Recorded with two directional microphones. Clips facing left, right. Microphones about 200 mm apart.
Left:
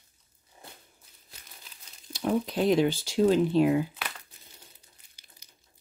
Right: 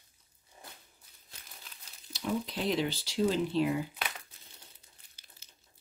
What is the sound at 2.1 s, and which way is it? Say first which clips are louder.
Speech: left 7 dB; 50° left (ahead or behind).